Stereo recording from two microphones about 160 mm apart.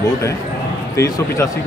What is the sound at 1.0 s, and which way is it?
Speech, 20° left (ahead or behind).